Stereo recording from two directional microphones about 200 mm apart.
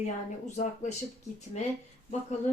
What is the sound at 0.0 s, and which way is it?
Speech, 35° left (ahead or behind).